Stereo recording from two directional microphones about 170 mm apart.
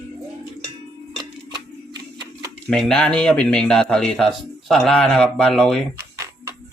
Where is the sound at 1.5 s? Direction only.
25° right (ahead or behind).